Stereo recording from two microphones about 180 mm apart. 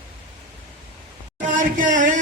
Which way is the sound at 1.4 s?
45° right (ahead or behind).